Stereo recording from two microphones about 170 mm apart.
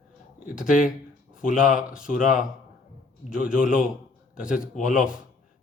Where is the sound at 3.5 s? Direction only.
5° right (ahead or behind).